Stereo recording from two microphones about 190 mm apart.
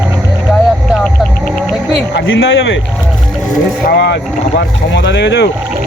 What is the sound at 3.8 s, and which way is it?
A man's voice, 65° left (ahead or behind).